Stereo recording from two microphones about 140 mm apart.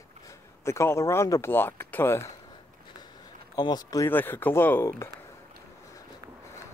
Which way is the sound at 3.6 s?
30° left (ahead or behind).